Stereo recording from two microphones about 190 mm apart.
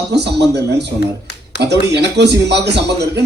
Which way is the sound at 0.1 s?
65° right (ahead or behind).